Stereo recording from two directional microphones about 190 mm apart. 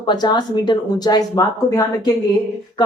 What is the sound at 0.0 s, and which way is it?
Speech, 20° left (ahead or behind).